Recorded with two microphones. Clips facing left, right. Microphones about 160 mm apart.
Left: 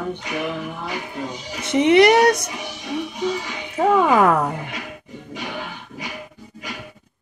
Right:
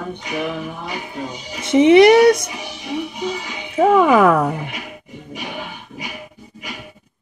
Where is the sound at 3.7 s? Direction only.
80° right.